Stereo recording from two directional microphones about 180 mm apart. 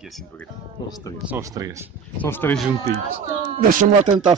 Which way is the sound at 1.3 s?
20° right (ahead or behind).